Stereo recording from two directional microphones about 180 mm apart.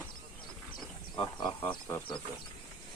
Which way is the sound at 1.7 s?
25° left (ahead or behind).